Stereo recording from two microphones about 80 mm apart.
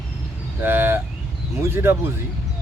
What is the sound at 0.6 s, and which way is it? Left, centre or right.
A man's voice, right.